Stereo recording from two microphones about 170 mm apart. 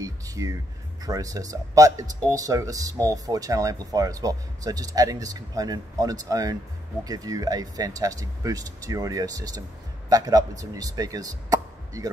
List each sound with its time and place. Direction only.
0.0 s music: 20° right (ahead or behind)
1.0 s speech: 20° right (ahead or behind)